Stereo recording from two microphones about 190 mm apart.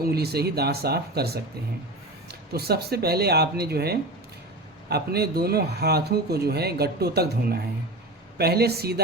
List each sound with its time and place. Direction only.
0.0 s a man's voice: 55° right (ahead or behind)
2.5 s a man's voice: 55° right (ahead or behind)